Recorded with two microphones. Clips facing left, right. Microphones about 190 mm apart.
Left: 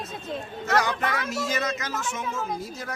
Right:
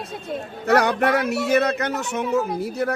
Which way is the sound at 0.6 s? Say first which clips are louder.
Right 7 dB; 65° right (ahead or behind).